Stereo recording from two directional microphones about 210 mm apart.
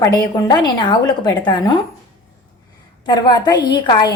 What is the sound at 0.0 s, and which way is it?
A woman's voice, 20° left (ahead or behind).